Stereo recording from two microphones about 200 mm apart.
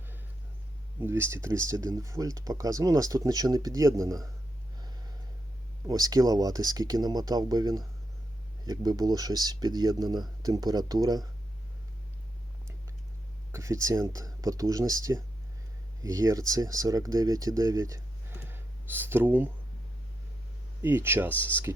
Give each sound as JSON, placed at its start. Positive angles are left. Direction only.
{"t": 0.9, "sound": "speech", "side_deg": -10}
{"t": 5.9, "sound": "speech", "side_deg": -20}
{"t": 13.5, "sound": "speech", "side_deg": -15}
{"t": 18.4, "sound": "a sound", "side_deg": -10}
{"t": 20.8, "sound": "speech", "side_deg": -10}